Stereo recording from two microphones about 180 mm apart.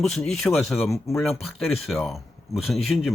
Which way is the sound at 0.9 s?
15° left (ahead or behind).